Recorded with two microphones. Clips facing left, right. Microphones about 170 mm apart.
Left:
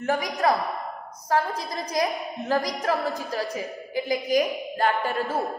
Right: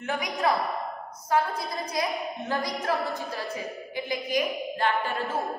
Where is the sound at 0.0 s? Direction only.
40° left (ahead or behind).